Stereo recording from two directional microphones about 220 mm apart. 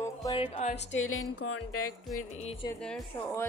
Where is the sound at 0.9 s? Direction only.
60° left (ahead or behind).